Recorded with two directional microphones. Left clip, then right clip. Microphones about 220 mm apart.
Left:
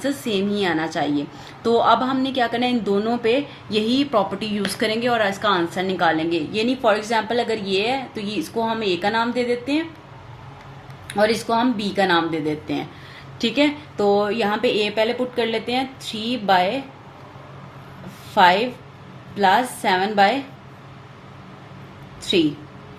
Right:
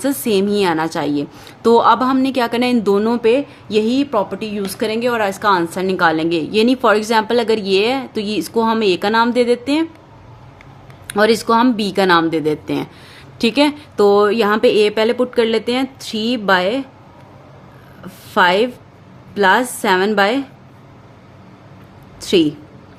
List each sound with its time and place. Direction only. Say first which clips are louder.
0.0 s a woman's voice: right 6 dB; 40° right (ahead or behind)
11.1 s a woman's voice: right 6 dB; 45° right (ahead or behind)
18.4 s a woman's voice: even; 45° right (ahead or behind)